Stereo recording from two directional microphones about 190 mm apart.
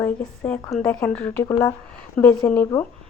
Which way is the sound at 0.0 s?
10° left (ahead or behind).